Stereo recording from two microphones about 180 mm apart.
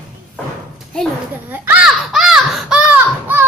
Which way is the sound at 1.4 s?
10° right (ahead or behind).